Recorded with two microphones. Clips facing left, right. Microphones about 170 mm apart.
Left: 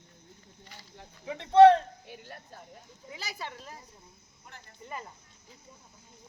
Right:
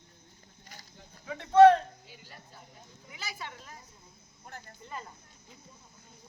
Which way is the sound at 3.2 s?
30° left (ahead or behind).